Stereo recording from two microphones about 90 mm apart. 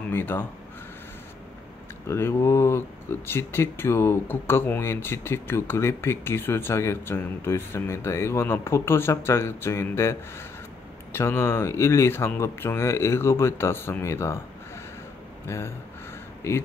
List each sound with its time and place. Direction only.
0.1 s speech: 25° left (ahead or behind)
2.0 s speech: 30° left (ahead or behind)
15.4 s speech: 30° left (ahead or behind)